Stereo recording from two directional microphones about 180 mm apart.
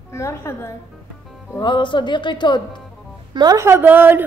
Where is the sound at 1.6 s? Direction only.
25° left (ahead or behind).